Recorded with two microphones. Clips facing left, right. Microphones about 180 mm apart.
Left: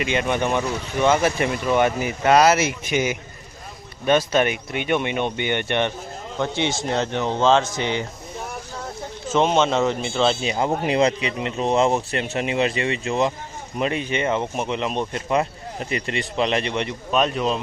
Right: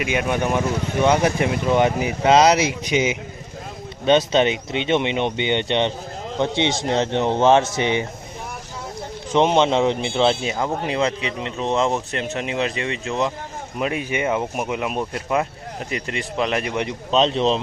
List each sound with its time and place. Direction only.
0.0 s speech: 10° right (ahead or behind)
9.3 s speech: 15° right (ahead or behind)
10.5 s speech: 15° left (ahead or behind); by 16.9 s 10° right (ahead or behind)
17.1 s speech: 25° right (ahead or behind)